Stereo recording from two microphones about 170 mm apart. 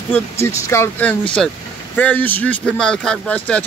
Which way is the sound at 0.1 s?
15° left (ahead or behind).